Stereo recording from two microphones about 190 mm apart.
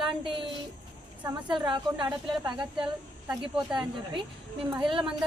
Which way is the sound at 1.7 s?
25° right (ahead or behind).